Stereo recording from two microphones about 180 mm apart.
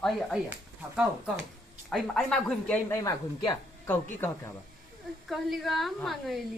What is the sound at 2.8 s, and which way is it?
Speech, 15° left (ahead or behind).